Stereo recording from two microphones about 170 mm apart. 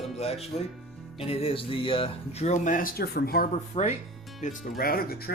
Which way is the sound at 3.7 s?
40° left (ahead or behind).